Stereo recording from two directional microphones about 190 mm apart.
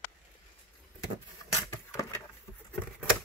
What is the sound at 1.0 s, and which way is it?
Vehicle, 15° left (ahead or behind).